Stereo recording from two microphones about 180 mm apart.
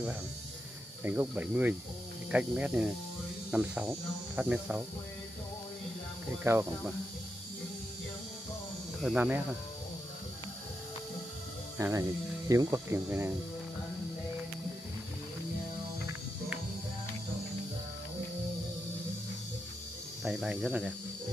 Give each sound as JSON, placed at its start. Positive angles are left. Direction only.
{"t": 1.0, "sound": "speech", "side_deg": -10}
{"t": 6.4, "sound": "speech", "side_deg": -15}
{"t": 9.0, "sound": "speech", "side_deg": -10}
{"t": 11.8, "sound": "speech", "side_deg": -20}
{"t": 20.2, "sound": "speech", "side_deg": -5}